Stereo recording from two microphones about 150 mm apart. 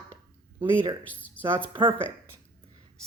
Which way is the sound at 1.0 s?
10° left (ahead or behind).